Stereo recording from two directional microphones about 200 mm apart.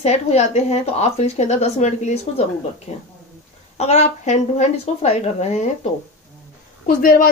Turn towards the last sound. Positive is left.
turn(degrees=45)  # may be behind; listen again after turning